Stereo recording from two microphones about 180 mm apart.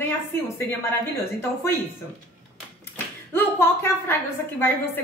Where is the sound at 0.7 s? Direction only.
15° left (ahead or behind).